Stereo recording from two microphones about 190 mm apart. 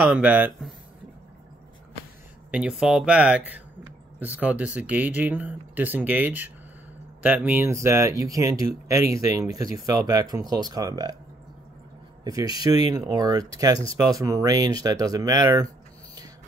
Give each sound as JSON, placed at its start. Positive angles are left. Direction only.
{"t": 0.0, "sound": "speech", "side_deg": -5}
{"t": 2.5, "sound": "speech", "side_deg": -5}
{"t": 12.3, "sound": "speech", "side_deg": -20}